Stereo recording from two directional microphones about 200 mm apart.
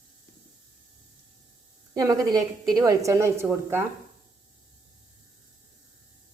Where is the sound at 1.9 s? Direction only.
20° right (ahead or behind).